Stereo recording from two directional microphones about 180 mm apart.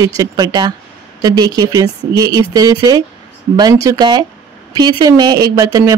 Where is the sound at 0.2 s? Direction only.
20° right (ahead or behind).